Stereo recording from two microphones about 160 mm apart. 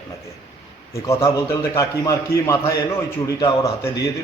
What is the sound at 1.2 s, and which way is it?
A man's voice, 20° left (ahead or behind).